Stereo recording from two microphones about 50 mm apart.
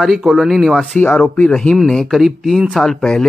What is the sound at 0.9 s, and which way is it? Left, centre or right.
Speech, left.